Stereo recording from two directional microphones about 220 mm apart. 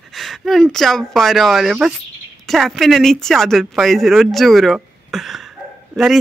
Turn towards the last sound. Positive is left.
turn(degrees=0)  # may be behind; listen again after turning